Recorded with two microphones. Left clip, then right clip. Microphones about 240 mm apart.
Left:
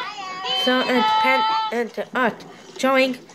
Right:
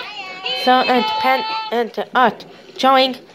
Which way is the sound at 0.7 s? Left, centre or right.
Centre.